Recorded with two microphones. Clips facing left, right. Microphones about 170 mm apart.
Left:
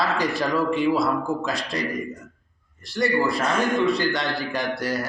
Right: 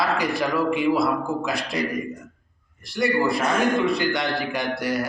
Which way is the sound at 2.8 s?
10° right (ahead or behind).